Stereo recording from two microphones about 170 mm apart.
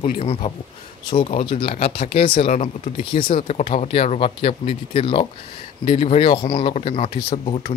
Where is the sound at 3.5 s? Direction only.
45° left (ahead or behind); by 7.7 s 30° left (ahead or behind).